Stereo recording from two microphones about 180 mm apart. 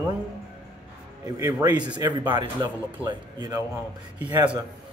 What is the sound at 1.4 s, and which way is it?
Speech, 20° right (ahead or behind).